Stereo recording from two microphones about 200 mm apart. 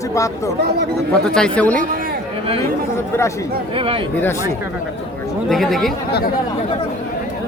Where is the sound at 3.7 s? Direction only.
25° right (ahead or behind).